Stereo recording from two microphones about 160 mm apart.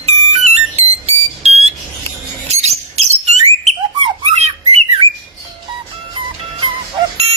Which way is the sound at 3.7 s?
Centre (ahead or behind).